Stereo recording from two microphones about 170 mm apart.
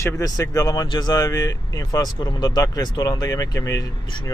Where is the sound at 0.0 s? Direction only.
15° left (ahead or behind).